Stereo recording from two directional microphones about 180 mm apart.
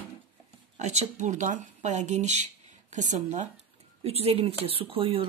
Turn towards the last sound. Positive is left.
turn(degrees=-30)  # may be behind; listen again after turning